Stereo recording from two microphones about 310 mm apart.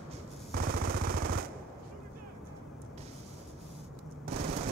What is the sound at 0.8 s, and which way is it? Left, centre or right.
Machine gun, right.